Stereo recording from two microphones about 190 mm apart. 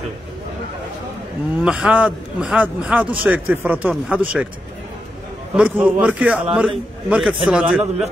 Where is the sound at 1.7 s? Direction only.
5° right (ahead or behind).